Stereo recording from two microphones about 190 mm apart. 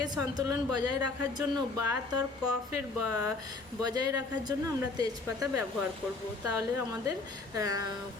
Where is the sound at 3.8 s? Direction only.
20° right (ahead or behind).